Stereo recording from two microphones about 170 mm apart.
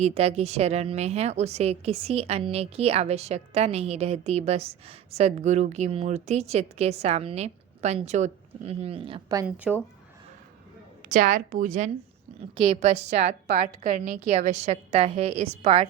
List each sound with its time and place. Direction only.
0.0 s a woman's voice: 35° right (ahead or behind)
9.7 s speech: 5° right (ahead or behind)
11.1 s a woman's voice: 50° right (ahead or behind)
12.4 s a woman's voice: 35° right (ahead or behind)